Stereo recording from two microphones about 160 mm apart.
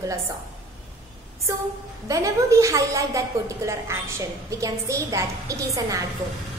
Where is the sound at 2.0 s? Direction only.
20° right (ahead or behind).